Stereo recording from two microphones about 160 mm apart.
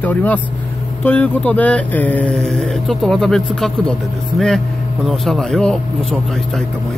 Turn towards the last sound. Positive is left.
turn(degrees=5)  # may be behind; listen again after turning